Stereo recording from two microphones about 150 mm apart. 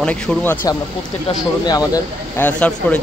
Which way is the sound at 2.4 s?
10° left (ahead or behind).